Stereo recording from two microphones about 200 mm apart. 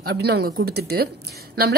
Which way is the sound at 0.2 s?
55° right (ahead or behind).